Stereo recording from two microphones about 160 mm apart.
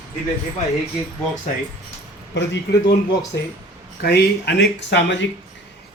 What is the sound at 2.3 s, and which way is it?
Speech, 90° left.